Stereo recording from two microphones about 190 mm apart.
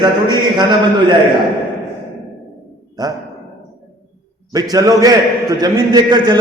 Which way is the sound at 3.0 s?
20° right (ahead or behind).